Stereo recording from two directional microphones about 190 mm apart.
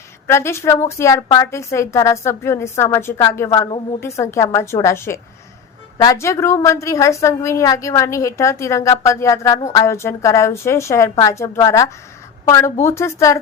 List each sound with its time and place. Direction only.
0.3 s a woman's voice: 15° left (ahead or behind)